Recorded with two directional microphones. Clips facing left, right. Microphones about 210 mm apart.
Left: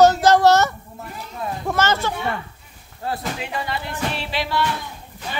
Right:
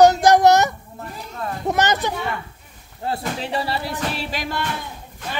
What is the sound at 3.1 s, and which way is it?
Music, 35° right (ahead or behind).